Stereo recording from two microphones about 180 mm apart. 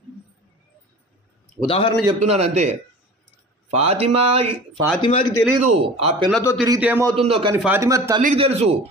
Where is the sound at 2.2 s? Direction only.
35° right (ahead or behind).